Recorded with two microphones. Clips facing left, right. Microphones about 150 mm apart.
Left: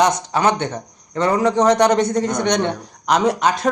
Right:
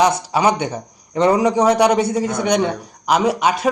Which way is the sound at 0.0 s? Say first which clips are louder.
Right 1 dB; 10° right (ahead or behind).